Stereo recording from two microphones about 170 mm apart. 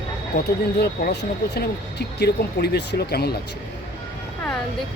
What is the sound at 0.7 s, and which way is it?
Speech, 80° left.